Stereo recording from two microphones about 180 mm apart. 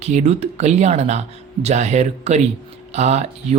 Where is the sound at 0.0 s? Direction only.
40° right (ahead or behind).